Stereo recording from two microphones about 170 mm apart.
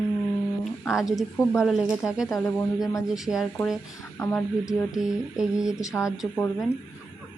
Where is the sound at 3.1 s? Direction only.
Centre (ahead or behind).